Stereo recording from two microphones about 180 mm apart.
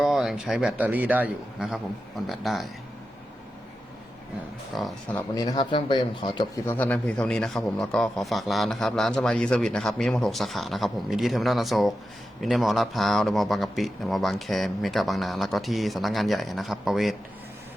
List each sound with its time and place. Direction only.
0.0 s a man's voice: centre (ahead or behind)
4.7 s a man's voice: centre (ahead or behind)
5.1 s speech: 20° left (ahead or behind)
6.7 s a man's voice: 10° left (ahead or behind)